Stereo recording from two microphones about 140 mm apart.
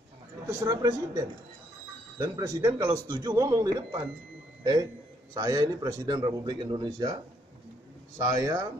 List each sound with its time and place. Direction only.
0.5 s a man's voice: 25° right (ahead or behind)
5.3 s a man's voice: 25° right (ahead or behind)
8.2 s a man's voice: 25° right (ahead or behind)